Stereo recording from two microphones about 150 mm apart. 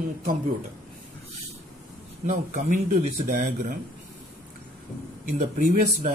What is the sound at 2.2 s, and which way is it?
Speech, 60° right (ahead or behind).